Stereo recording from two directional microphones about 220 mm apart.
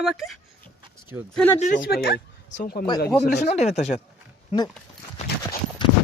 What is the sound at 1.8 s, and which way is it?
Speech, 45° left (ahead or behind).